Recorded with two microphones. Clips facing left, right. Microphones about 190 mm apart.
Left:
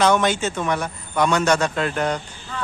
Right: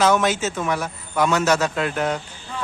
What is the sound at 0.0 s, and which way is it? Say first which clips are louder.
A man's voice: even; 5° right (ahead or behind).